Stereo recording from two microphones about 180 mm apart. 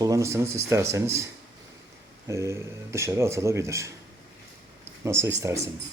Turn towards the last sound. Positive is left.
turn(degrees=-15)  # may be behind; listen again after turning